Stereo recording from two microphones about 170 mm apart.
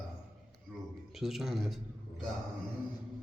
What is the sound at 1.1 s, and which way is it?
Speech, centre (ahead or behind).